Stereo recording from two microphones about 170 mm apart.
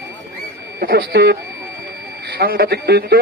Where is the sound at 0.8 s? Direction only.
70° right (ahead or behind).